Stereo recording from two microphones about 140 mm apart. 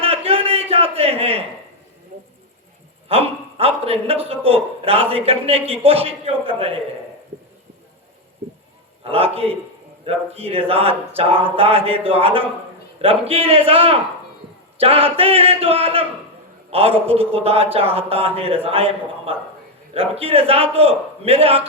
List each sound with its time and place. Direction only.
0.3 s a sound: 45° right (ahead or behind)
3.1 s a man's voice: 45° right (ahead or behind)
9.0 s a man's voice: 45° right (ahead or behind)